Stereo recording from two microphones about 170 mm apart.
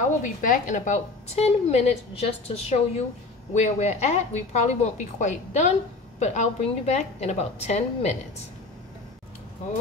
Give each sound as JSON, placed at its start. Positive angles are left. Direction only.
{"t": 0.2, "sound": "a woman's voice", "side_deg": 50}